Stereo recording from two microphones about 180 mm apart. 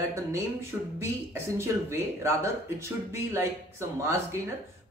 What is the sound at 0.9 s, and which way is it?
Speech, 15° right (ahead or behind).